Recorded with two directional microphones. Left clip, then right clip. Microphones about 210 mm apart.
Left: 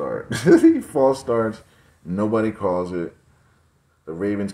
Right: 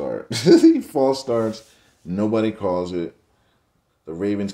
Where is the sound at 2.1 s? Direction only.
10° right (ahead or behind).